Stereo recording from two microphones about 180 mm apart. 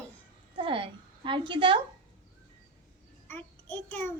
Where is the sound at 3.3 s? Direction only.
10° left (ahead or behind).